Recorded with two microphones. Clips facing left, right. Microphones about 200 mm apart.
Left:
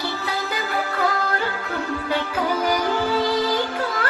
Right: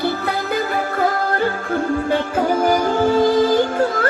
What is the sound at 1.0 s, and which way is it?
Music, 50° right (ahead or behind).